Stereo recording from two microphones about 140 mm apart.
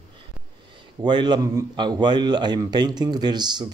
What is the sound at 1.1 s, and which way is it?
A man's voice, 30° right (ahead or behind).